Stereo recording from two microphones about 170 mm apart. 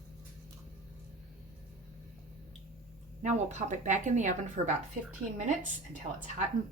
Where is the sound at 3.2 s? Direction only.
45° right (ahead or behind).